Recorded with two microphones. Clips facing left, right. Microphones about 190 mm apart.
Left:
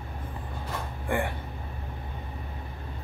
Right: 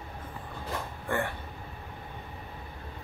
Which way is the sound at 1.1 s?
15° left (ahead or behind).